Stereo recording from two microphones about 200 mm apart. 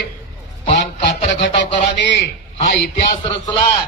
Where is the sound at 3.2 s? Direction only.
25° left (ahead or behind).